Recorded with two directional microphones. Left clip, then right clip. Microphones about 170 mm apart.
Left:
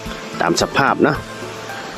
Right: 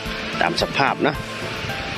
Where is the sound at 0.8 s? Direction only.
45° left (ahead or behind).